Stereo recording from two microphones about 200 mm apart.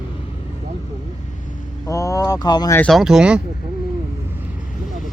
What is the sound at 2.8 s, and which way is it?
Speech, centre (ahead or behind).